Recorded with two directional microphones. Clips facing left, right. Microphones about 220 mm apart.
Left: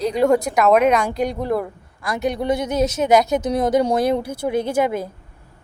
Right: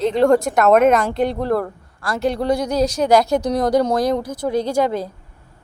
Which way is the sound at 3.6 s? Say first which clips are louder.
Left 1 dB; 15° left (ahead or behind).